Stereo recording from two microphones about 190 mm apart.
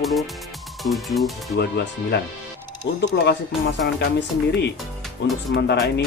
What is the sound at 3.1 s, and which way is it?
Speech, 70° left (ahead or behind).